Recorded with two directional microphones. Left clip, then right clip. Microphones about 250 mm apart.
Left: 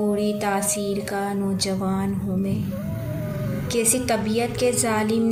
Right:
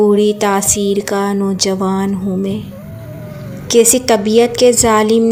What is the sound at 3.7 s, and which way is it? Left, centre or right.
Speech, right.